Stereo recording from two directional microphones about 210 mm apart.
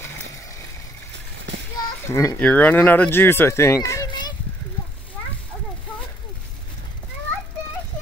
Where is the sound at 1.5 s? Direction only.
55° right (ahead or behind).